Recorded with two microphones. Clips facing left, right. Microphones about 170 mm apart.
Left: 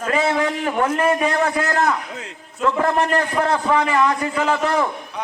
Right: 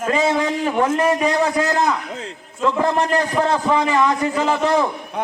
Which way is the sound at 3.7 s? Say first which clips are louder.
Even; 20° right (ahead or behind).